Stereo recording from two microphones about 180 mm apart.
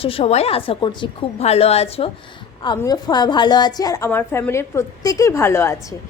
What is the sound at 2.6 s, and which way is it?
A woman's voice, 20° left (ahead or behind).